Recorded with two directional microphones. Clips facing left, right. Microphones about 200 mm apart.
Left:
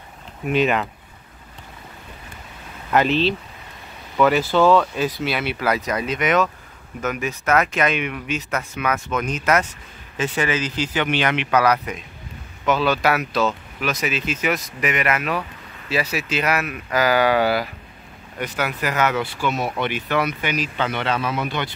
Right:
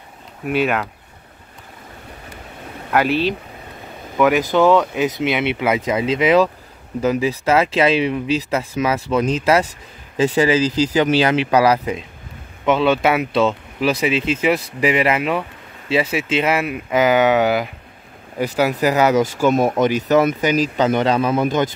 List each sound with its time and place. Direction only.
0.5 s speech: 10° right (ahead or behind)
2.9 s speech: 10° right (ahead or behind)
18.6 s speech: 35° right (ahead or behind)